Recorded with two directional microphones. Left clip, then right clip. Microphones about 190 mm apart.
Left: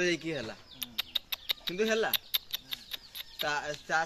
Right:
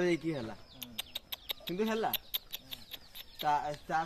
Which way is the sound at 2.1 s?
10° right (ahead or behind).